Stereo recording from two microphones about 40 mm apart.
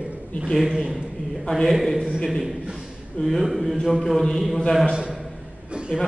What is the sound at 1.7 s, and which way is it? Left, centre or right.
Mantra, centre.